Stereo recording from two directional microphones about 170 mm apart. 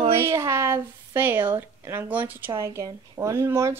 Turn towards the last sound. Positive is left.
turn(degrees=-15)  # may be behind; listen again after turning